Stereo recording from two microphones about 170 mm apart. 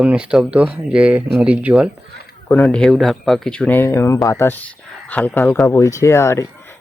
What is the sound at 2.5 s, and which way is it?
Speech, 10° left (ahead or behind).